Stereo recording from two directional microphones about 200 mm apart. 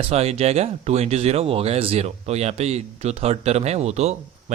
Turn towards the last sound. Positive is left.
turn(degrees=-30)  # may be behind; listen again after turning